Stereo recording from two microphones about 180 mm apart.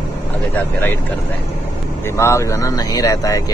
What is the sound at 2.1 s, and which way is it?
Speech, 15° left (ahead or behind).